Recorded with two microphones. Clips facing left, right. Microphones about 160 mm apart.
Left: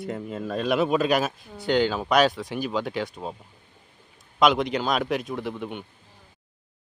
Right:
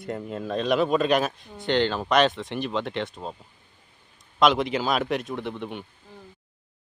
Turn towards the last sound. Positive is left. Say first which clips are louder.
# left 1 dB
turn(degrees=0)  # may be behind; listen again after turning